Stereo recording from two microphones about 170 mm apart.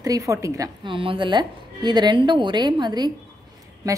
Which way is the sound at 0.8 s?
30° right (ahead or behind).